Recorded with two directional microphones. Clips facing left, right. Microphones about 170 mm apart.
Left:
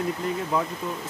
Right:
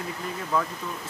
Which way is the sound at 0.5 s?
20° left (ahead or behind).